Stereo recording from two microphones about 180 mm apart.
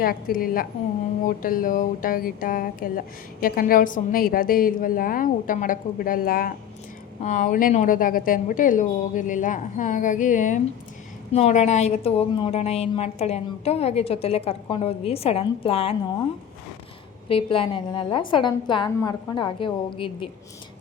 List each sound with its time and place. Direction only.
0.0 s a woman's voice: 55° left (ahead or behind); by 16.0 s 35° left (ahead or behind)
17.2 s a woman's voice: 30° left (ahead or behind)